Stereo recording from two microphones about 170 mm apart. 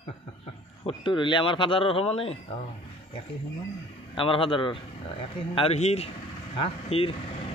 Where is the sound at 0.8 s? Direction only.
30° left (ahead or behind).